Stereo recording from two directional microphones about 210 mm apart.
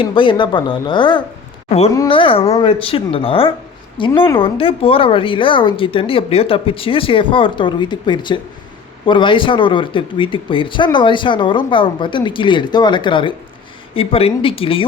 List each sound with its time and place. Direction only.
0.0 s speech: 25° left (ahead or behind)